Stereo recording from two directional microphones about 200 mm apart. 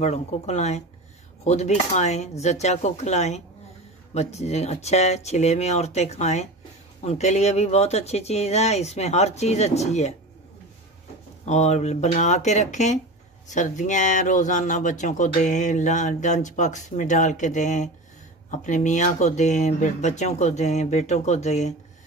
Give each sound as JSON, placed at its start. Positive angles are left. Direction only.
{"t": 0.0, "sound": "speech", "side_deg": 35}
{"t": 11.4, "sound": "speech", "side_deg": 35}